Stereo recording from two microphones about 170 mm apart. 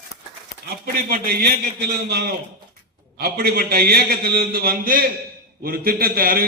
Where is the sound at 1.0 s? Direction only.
60° right (ahead or behind).